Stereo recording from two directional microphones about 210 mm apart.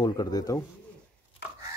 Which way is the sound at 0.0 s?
20° left (ahead or behind).